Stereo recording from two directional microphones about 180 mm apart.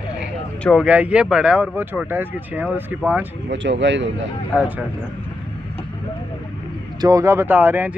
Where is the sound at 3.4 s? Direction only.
85° right.